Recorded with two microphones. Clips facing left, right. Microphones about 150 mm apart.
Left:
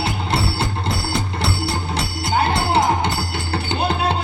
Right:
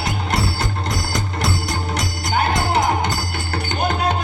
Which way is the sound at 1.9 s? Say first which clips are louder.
Even; 30° left (ahead or behind).